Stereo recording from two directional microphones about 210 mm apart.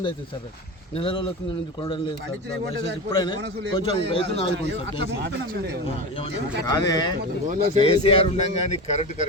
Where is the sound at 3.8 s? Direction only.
25° left (ahead or behind).